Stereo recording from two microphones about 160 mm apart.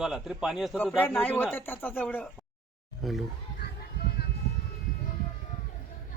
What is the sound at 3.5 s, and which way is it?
Music, 85° left.